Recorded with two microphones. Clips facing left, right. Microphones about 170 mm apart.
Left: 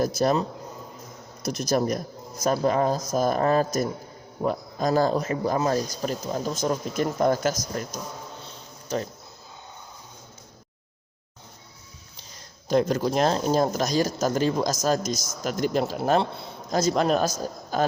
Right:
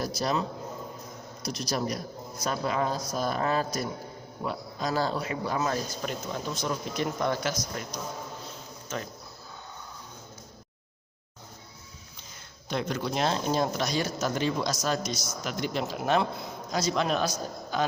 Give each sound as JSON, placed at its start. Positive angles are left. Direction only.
{"t": 0.0, "sound": "speech", "side_deg": 50}
{"t": 8.4, "sound": "insect", "side_deg": 35}
{"t": 12.6, "sound": "speech", "side_deg": 40}
{"t": 16.7, "sound": "speech", "side_deg": 45}